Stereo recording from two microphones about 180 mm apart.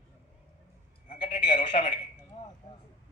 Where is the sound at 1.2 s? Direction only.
25° left (ahead or behind).